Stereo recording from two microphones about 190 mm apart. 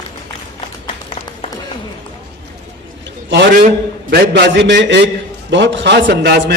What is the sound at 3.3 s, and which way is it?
A man's voice, 65° right (ahead or behind).